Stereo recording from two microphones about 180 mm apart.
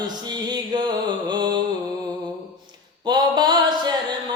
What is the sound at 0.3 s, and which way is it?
Music, 25° right (ahead or behind).